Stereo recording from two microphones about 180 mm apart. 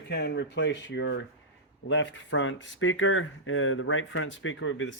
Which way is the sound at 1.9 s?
90° left.